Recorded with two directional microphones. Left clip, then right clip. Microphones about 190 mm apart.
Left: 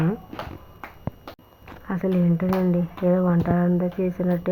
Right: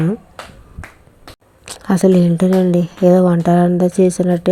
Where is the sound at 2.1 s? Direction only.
60° right (ahead or behind).